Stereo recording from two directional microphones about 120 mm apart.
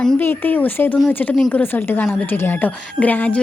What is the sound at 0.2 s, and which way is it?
A woman's voice, 15° left (ahead or behind).